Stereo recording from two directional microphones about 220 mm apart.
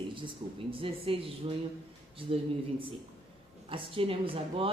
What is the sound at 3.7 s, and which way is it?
A woman's voice, 25° right (ahead or behind).